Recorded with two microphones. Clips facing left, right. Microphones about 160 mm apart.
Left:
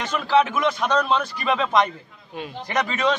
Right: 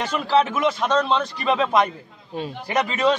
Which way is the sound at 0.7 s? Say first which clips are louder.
Right 1 dB; centre (ahead or behind).